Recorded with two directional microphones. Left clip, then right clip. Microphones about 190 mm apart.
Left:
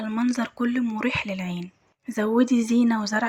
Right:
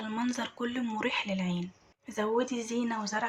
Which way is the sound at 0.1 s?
25° left (ahead or behind).